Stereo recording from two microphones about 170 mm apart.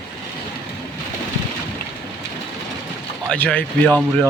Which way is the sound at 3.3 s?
5° left (ahead or behind).